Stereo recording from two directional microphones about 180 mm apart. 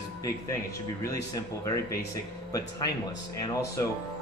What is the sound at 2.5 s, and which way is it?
Speech, 20° left (ahead or behind).